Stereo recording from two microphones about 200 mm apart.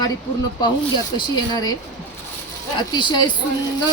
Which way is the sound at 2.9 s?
20° left (ahead or behind).